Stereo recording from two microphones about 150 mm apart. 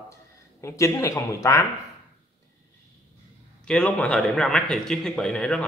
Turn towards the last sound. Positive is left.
turn(degrees=5)  # may be behind; listen again after turning